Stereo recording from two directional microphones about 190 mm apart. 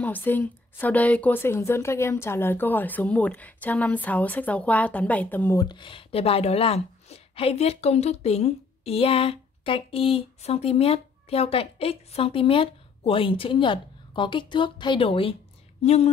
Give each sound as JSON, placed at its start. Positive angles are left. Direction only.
{"t": 0.0, "sound": "a woman's voice", "side_deg": 10}